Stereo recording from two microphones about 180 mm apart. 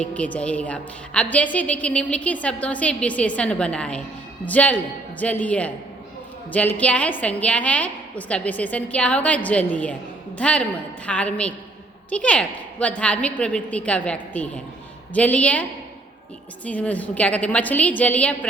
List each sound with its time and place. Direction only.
0.0 s a woman's voice: 5° left (ahead or behind)
16.6 s a woman's voice: 10° left (ahead or behind)